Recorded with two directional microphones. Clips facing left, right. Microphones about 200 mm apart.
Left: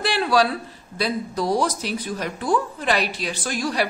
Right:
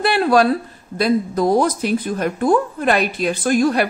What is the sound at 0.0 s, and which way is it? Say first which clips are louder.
Speech: right 5 dB; 50° right (ahead or behind).